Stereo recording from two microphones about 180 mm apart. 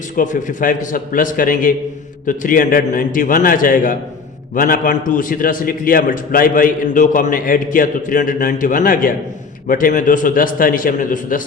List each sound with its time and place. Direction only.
0.2 s a man's voice: 45° left (ahead or behind)